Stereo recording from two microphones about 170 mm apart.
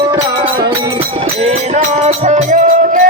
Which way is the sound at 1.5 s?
40° right (ahead or behind).